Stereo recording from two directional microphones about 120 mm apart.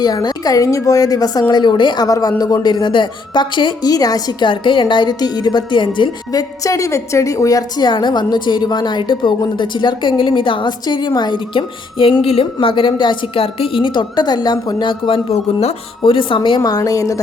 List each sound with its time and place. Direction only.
0.0 s a woman's voice: 35° left (ahead or behind)
6.6 s a woman's voice: 25° left (ahead or behind); by 16.1 s 55° left (ahead or behind)
16.1 s a woman's voice: 45° left (ahead or behind); by 17.2 s 30° left (ahead or behind)